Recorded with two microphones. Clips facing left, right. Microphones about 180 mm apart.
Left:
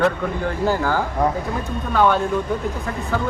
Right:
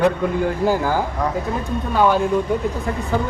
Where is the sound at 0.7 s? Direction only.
15° right (ahead or behind).